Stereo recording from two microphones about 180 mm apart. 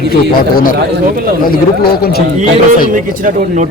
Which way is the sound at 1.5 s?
60° left (ahead or behind).